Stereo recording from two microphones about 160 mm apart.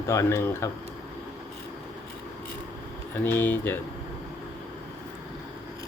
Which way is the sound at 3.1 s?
10° left (ahead or behind).